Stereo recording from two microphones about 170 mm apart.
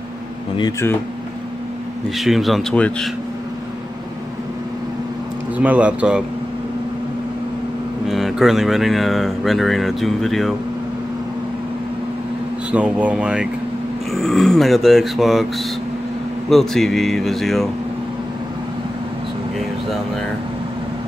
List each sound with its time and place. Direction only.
0.6 s speech: 20° left (ahead or behind)
2.1 s speech: centre (ahead or behind)
5.6 s speech: 10° right (ahead or behind)
8.1 s speech: centre (ahead or behind)
12.7 s speech: 5° right (ahead or behind)
16.4 s speech: centre (ahead or behind)